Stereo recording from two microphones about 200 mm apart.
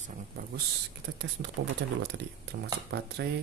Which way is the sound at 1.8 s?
65° right (ahead or behind).